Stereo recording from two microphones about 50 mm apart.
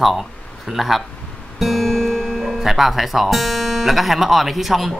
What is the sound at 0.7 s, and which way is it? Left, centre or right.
A man's voice, centre.